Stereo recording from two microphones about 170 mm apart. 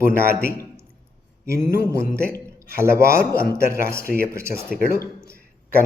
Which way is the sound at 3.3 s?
60° left (ahead or behind).